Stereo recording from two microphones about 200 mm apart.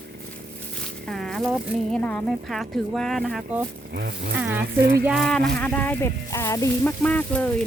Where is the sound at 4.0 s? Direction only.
55° right (ahead or behind).